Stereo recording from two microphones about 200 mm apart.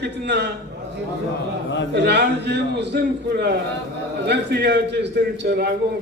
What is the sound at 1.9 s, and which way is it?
Speech, 55° right (ahead or behind).